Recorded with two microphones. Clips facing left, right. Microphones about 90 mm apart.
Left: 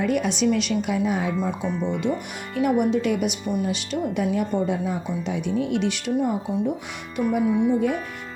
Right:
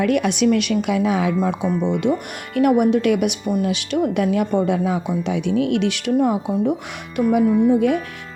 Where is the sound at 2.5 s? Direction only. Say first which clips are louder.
Right 5 dB; 65° right (ahead or behind); by 6.5 s 80° right.